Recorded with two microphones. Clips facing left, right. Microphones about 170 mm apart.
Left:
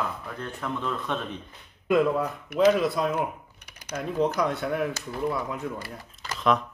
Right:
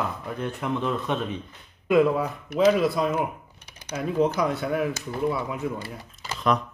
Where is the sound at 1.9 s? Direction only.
5° right (ahead or behind).